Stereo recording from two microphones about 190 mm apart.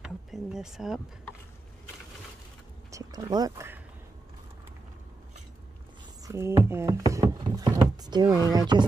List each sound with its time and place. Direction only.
0.0 s speech: 5° right (ahead or behind)
2.9 s a sound: 15° right (ahead or behind)
6.2 s speech: 15° right (ahead or behind)